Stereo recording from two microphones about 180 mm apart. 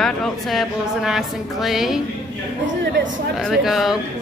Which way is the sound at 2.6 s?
90° right.